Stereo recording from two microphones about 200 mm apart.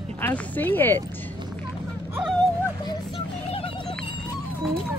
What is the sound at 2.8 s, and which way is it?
Speech, 20° left (ahead or behind).